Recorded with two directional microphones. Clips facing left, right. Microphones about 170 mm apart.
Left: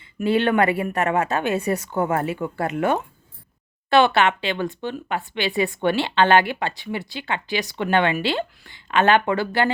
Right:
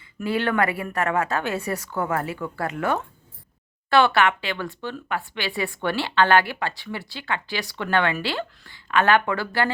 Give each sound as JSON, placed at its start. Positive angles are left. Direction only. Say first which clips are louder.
{"t": 0.2, "sound": "speech", "louder": "left 4 dB", "side_deg": 25}